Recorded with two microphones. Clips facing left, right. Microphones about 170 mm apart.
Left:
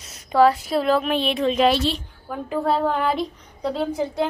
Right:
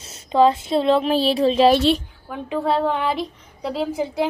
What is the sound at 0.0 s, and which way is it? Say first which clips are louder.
A woman's voice: right 1 dB; 25° right (ahead or behind).